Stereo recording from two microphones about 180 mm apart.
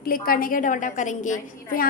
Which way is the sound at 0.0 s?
55° left (ahead or behind).